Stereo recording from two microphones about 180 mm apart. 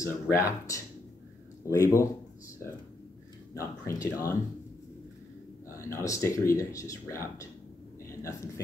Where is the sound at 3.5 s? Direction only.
15° left (ahead or behind).